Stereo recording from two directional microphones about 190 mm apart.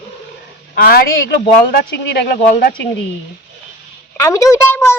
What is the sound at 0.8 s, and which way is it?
Speech, 55° left (ahead or behind).